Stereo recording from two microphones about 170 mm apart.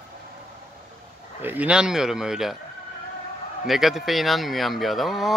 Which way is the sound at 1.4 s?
10° right (ahead or behind).